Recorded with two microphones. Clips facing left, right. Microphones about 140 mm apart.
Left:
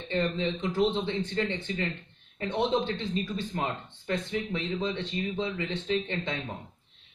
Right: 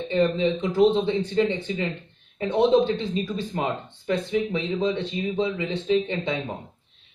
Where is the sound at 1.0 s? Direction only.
15° right (ahead or behind).